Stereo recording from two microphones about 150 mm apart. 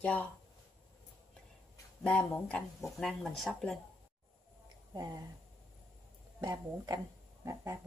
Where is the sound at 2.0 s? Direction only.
10° left (ahead or behind).